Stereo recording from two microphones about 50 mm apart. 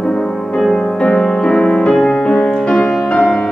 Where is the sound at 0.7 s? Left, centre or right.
Left.